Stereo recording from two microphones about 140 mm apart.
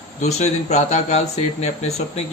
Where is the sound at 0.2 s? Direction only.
50° left (ahead or behind).